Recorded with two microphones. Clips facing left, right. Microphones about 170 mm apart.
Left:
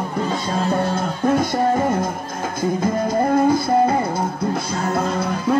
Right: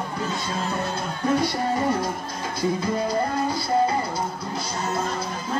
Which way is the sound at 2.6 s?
50° left (ahead or behind).